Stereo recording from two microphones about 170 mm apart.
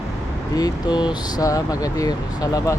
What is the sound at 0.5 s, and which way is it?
Speech, 25° left (ahead or behind).